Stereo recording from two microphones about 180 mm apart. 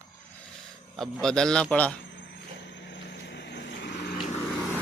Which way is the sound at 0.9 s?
Centre (ahead or behind).